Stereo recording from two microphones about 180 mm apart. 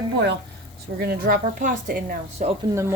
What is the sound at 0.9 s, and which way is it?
Speech, 60° right (ahead or behind).